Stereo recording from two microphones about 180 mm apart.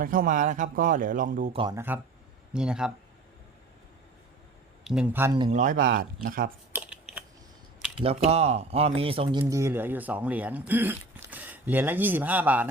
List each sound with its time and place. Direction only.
0.0 s speech: 50° right (ahead or behind)
1.7 s speech: 10° right (ahead or behind)
4.8 s speech: 5° right (ahead or behind)
5.5 s speech: 45° right (ahead or behind)
6.7 s a sound: 5° right (ahead or behind)
8.0 s speech: 35° right (ahead or behind)
9.4 s speech: 15° right (ahead or behind)